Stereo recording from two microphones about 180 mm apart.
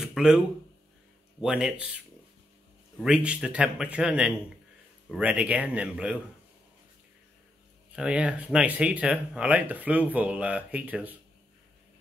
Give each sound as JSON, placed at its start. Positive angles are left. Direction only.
{"t": 0.0, "sound": "a sound", "side_deg": -5}
{"t": 1.4, "sound": "a man's voice", "side_deg": -5}
{"t": 3.0, "sound": "a man's voice", "side_deg": -5}
{"t": 7.9, "sound": "speech", "side_deg": -5}